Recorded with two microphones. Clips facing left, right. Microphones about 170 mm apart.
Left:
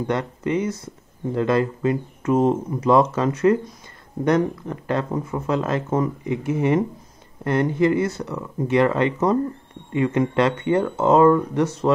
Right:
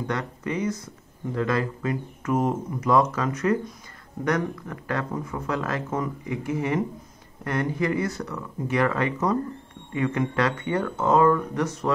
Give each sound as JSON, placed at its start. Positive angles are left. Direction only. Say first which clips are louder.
{"t": 0.0, "sound": "speech", "louder": "left 5 dB", "side_deg": 25}